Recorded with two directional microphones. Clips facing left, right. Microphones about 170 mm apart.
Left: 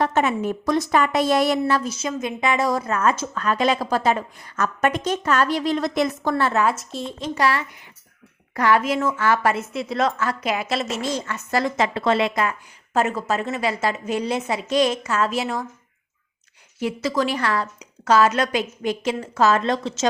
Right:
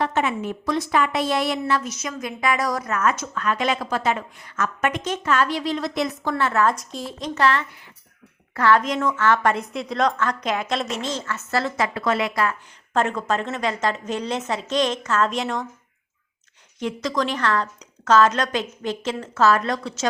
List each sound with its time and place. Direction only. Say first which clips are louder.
0.0 s a woman's voice: left 3 dB; 40° left (ahead or behind)
6.7 s a woman's voice: even; centre (ahead or behind)
11.9 s a woman's voice: left 2 dB; 25° left (ahead or behind)
12.9 s a woman's voice: even; 5° left (ahead or behind)
16.8 s a woman's voice: left 2 dB; 5° left (ahead or behind); by 20.1 s 25° left (ahead or behind)